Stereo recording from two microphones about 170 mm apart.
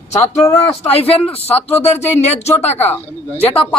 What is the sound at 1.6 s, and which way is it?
A man's voice, 40° left (ahead or behind).